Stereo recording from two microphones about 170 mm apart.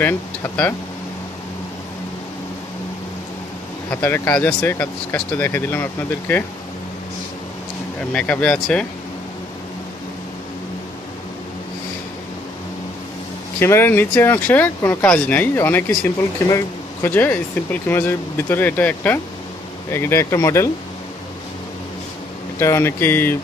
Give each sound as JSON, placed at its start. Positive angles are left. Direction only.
{"t": 0.0, "sound": "speech", "side_deg": 10}
{"t": 3.9, "sound": "speech", "side_deg": 15}
{"t": 8.1, "sound": "speech", "side_deg": 10}
{"t": 13.6, "sound": "speech", "side_deg": 15}
{"t": 22.6, "sound": "speech", "side_deg": 15}